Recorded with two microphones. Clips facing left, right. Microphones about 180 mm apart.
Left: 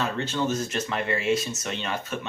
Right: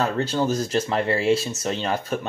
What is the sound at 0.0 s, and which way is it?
Speech, 35° right (ahead or behind).